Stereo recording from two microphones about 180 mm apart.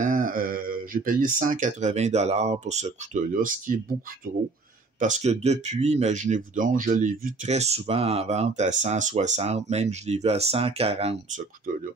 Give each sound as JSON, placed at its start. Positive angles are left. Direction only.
{"t": 0.0, "sound": "speech", "side_deg": -50}
{"t": 5.0, "sound": "speech", "side_deg": -40}